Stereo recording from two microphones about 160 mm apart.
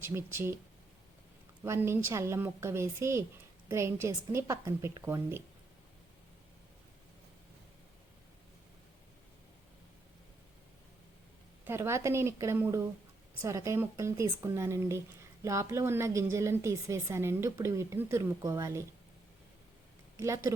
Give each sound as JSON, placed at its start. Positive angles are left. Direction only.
{"t": 0.0, "sound": "a woman's voice", "side_deg": -15}
{"t": 1.6, "sound": "a woman's voice", "side_deg": -15}
{"t": 11.6, "sound": "a woman's voice", "side_deg": -15}
{"t": 20.1, "sound": "a woman's voice", "side_deg": -20}